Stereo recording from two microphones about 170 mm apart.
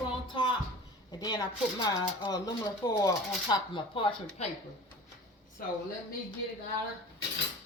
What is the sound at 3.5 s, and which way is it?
Speech, 30° left (ahead or behind).